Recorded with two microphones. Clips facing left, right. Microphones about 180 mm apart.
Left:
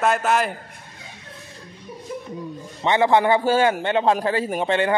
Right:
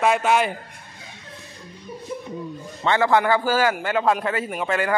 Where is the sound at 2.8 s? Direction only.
20° left (ahead or behind).